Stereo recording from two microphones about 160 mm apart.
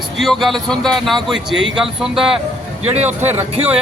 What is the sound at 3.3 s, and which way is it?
Speech, 10° right (ahead or behind).